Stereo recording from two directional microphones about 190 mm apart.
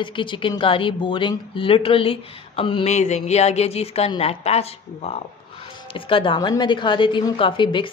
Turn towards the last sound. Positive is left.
turn(degrees=25)  # may be behind; listen again after turning